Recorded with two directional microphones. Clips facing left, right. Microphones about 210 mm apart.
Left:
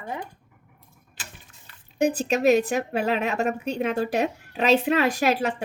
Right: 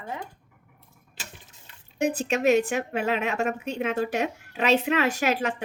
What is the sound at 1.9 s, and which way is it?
A woman's voice, 35° left (ahead or behind).